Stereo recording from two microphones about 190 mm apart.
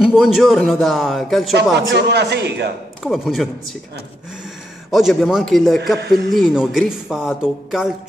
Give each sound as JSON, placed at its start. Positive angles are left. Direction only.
{"t": 0.0, "sound": "speech", "side_deg": 0}
{"t": 1.9, "sound": "a man's voice", "side_deg": -65}
{"t": 3.0, "sound": "speech", "side_deg": 0}
{"t": 4.9, "sound": "speech", "side_deg": 0}
{"t": 5.9, "sound": "a man's voice", "side_deg": -60}
{"t": 6.3, "sound": "speech", "side_deg": 0}